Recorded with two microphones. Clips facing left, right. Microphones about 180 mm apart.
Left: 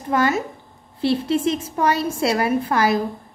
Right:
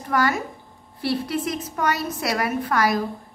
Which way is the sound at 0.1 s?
25° left (ahead or behind).